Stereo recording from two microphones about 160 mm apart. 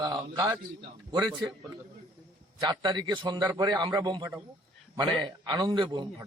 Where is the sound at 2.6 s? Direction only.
25° right (ahead or behind).